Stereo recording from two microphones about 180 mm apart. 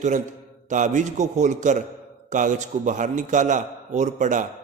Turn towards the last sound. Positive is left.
turn(degrees=-45)  # may be behind; listen again after turning